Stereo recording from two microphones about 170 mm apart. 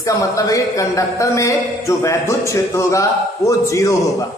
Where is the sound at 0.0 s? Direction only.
20° left (ahead or behind).